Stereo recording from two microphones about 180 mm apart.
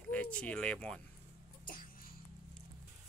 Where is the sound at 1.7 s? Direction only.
55° left (ahead or behind).